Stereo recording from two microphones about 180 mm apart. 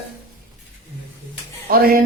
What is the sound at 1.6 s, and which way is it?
Speech, 55° right (ahead or behind).